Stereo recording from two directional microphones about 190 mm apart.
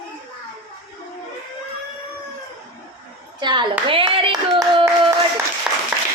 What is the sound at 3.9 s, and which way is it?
Clapping, 30° right (ahead or behind).